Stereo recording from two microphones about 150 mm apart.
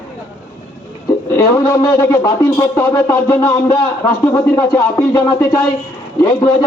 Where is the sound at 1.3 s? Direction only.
20° left (ahead or behind).